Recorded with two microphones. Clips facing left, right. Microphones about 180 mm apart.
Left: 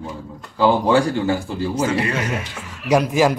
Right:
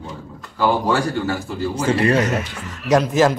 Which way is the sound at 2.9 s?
10° left (ahead or behind).